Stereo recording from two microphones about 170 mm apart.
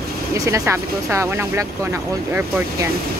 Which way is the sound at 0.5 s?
15° right (ahead or behind).